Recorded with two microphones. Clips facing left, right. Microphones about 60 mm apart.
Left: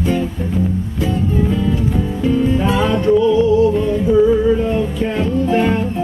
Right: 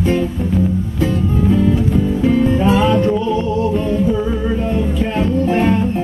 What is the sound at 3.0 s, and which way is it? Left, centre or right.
Music, right.